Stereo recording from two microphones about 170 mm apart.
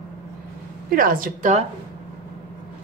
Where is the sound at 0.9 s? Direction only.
55° right (ahead or behind).